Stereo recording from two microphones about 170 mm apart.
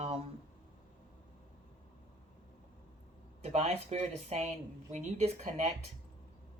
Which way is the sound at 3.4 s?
40° right (ahead or behind).